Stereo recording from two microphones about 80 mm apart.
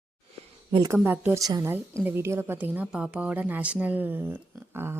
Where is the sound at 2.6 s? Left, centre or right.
Right.